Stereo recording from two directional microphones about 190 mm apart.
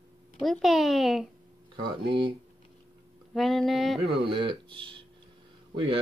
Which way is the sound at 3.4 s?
Centre (ahead or behind).